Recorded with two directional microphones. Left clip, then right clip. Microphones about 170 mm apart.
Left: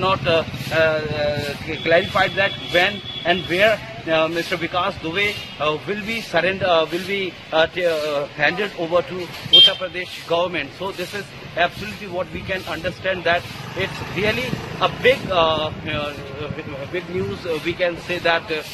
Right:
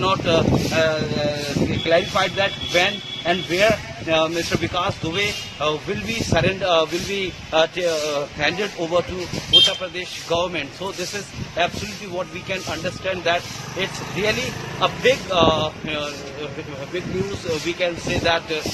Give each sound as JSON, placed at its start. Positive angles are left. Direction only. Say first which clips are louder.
{"t": 0.0, "sound": "speech", "louder": "even", "side_deg": 0}
{"t": 17.6, "sound": "speech", "louder": "left 2 dB", "side_deg": 0}